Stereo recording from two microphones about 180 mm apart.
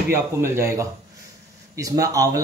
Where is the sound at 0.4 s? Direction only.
15° right (ahead or behind).